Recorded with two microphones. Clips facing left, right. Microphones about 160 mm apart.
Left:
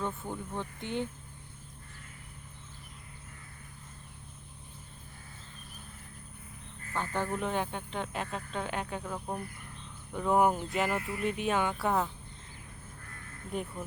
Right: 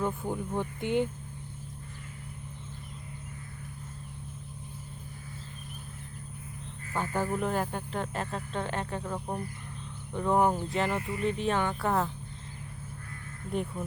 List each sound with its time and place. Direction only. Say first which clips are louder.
0.0 s speech: right 5 dB; 15° right (ahead or behind)
6.9 s speech: right 3 dB; 10° right (ahead or behind)
9.1 s speech: right 2 dB; 15° right (ahead or behind)
10.1 s speech: right 1 dB; centre (ahead or behind)
13.5 s speech: right 4 dB; centre (ahead or behind)